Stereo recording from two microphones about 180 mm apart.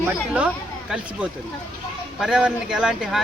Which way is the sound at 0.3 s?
5° right (ahead or behind).